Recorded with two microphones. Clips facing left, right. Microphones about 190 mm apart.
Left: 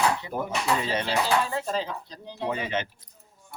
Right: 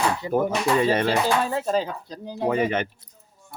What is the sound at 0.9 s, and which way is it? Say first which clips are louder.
Speech: right 5 dB; 50° right (ahead or behind).